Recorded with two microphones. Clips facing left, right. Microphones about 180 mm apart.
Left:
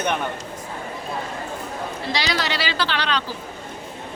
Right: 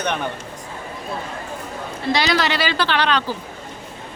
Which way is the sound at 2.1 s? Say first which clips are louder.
Right 5 dB; 55° right (ahead or behind).